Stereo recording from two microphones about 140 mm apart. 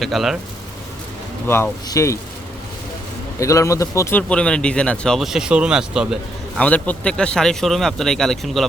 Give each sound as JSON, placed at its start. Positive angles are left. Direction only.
{"t": 0.0, "sound": "speech", "side_deg": 0}
{"t": 1.5, "sound": "a man's voice", "side_deg": 15}
{"t": 3.4, "sound": "a man's voice", "side_deg": 20}
{"t": 4.2, "sound": "speech", "side_deg": 5}
{"t": 6.6, "sound": "speech", "side_deg": 10}